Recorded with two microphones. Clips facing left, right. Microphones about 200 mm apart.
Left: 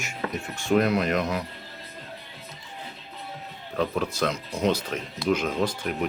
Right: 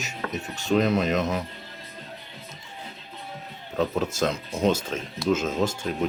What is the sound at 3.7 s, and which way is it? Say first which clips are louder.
Speech: right 1 dB; 25° right (ahead or behind).